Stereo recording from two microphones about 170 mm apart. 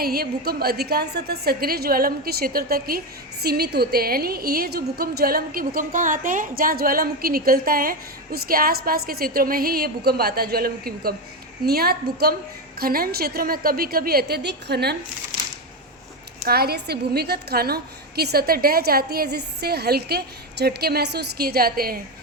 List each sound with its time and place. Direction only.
0.0 s a woman's voice: 65° right (ahead or behind)
16.4 s a woman's voice: 65° right (ahead or behind)